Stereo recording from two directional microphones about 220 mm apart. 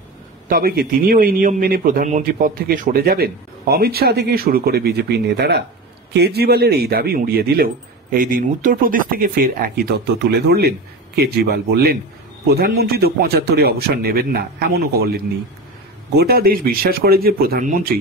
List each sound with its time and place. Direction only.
0.5 s a man's voice: 40° right (ahead or behind)
16.2 s a man's voice: 45° right (ahead or behind)